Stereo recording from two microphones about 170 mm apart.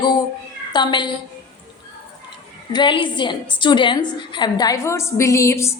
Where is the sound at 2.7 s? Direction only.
25° left (ahead or behind).